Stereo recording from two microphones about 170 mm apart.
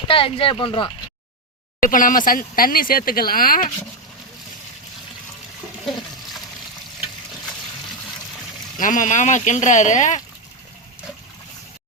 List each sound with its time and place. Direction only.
0.1 s speech: 30° left (ahead or behind)
1.8 s speech: 55° left (ahead or behind)
8.8 s speech: 50° left (ahead or behind)